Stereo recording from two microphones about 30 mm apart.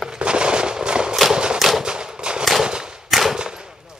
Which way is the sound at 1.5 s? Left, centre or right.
Centre.